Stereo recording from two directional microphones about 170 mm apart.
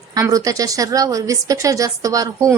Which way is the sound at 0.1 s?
20° right (ahead or behind).